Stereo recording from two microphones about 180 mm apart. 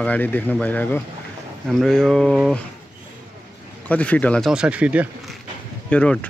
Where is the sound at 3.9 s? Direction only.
10° left (ahead or behind).